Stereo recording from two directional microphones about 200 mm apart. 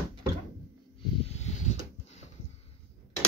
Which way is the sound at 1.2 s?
35° left (ahead or behind).